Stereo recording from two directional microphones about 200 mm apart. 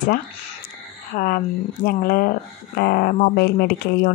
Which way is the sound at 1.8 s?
45° left (ahead or behind).